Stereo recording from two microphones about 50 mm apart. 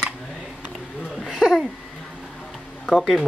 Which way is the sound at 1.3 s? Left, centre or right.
Centre.